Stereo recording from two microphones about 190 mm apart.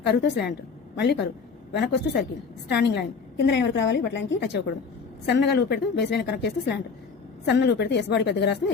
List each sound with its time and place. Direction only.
0.0 s a woman's voice: 60° left (ahead or behind)